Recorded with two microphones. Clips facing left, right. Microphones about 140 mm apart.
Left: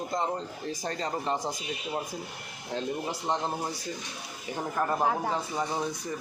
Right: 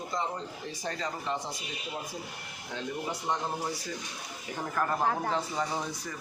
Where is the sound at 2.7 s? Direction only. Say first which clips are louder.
Left 3 dB; 30° left (ahead or behind).